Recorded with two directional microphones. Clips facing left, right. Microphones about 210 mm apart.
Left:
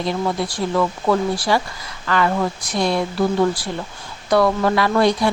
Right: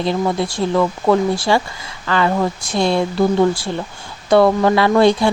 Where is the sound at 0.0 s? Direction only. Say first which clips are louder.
Right 3 dB; 25° right (ahead or behind).